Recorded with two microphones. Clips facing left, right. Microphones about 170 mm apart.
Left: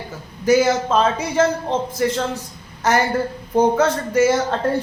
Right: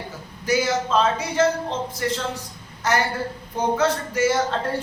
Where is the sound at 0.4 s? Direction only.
50° left (ahead or behind).